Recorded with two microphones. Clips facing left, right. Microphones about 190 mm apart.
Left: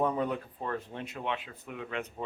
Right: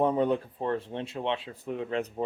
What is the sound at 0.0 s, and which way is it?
Speech, 30° right (ahead or behind).